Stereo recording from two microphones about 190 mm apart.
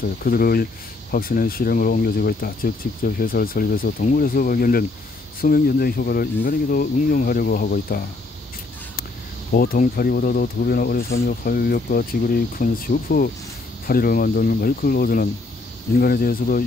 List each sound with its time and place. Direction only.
0.2 s speech: 50° left (ahead or behind)
9.5 s speech: 50° left (ahead or behind)